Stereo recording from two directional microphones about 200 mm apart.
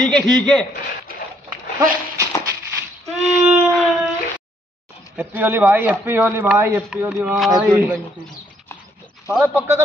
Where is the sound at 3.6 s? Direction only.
Centre (ahead or behind).